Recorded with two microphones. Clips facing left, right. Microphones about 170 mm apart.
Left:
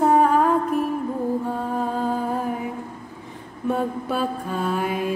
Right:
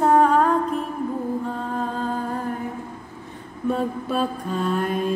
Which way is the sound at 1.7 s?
10° left (ahead or behind).